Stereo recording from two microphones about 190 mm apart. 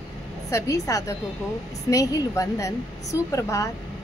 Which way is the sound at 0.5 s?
15° left (ahead or behind).